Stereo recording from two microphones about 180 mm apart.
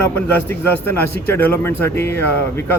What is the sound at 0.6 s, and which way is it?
A man's voice, 10° left (ahead or behind).